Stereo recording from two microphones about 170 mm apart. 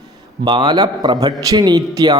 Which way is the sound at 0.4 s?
25° right (ahead or behind).